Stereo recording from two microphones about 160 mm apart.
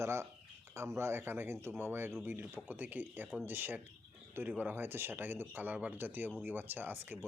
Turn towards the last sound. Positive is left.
turn(degrees=-15)  # may be behind; listen again after turning